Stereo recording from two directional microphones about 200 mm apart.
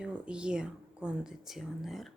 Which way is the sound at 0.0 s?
5° right (ahead or behind).